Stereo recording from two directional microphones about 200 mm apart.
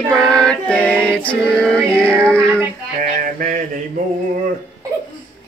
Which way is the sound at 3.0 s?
40° right (ahead or behind).